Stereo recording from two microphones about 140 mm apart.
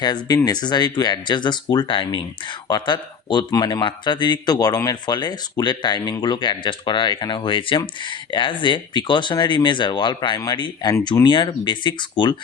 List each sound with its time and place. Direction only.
0.0 s speech: 30° left (ahead or behind)